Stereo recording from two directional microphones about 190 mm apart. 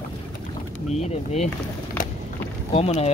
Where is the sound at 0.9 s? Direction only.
35° left (ahead or behind).